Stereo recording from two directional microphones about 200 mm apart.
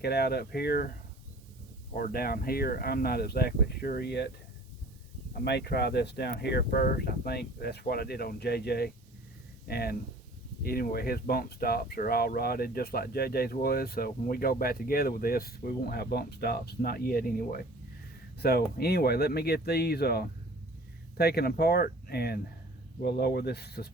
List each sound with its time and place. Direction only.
0.0 s speech: 50° left (ahead or behind)
5.5 s speech: 55° left (ahead or behind)